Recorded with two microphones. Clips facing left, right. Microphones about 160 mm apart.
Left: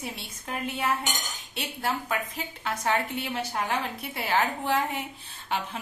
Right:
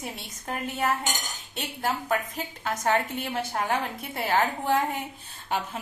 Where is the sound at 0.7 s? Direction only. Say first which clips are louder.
Right 2 dB; 45° right (ahead or behind).